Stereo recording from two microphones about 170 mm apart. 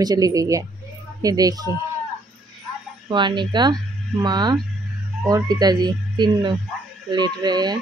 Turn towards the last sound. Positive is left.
turn(degrees=-25)  # may be behind; listen again after turning